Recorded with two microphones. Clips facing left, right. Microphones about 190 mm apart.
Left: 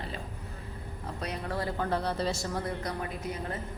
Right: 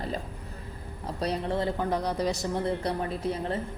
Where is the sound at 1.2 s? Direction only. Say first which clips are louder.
Right 6 dB; 30° right (ahead or behind).